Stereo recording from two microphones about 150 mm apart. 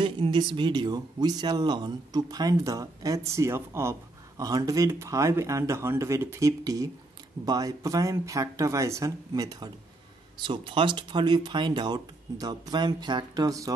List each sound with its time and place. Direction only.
0.0 s speech: 35° right (ahead or behind)